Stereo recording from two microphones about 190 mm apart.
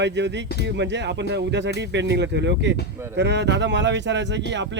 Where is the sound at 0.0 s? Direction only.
65° right (ahead or behind).